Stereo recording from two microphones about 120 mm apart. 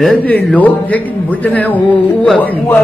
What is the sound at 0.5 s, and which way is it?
A man's voice, 15° left (ahead or behind).